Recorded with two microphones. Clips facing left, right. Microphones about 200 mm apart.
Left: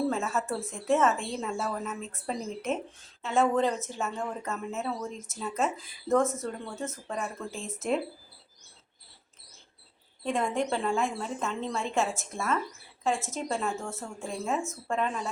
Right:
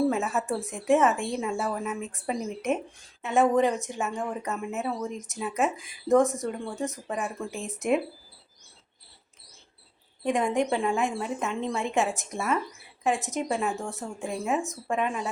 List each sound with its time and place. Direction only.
0.1 s speech: 15° right (ahead or behind)
10.2 s speech: 15° right (ahead or behind)